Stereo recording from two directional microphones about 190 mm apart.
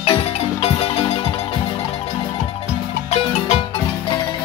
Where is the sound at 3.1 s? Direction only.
30° left (ahead or behind).